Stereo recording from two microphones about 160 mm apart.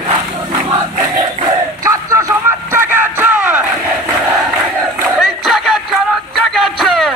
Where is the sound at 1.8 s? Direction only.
20° right (ahead or behind).